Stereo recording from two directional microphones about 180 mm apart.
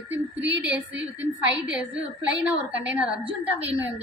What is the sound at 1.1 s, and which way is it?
A woman's voice, 10° right (ahead or behind).